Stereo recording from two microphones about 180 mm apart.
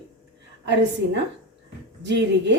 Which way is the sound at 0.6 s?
75° right (ahead or behind).